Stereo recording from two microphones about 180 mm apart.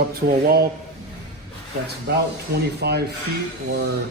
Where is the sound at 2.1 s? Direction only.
65° right (ahead or behind).